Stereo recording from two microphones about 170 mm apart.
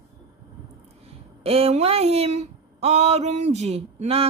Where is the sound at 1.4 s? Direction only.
35° right (ahead or behind).